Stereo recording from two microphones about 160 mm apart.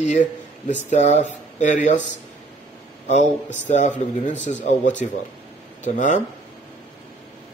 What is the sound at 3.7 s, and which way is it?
Speech, 45° left (ahead or behind).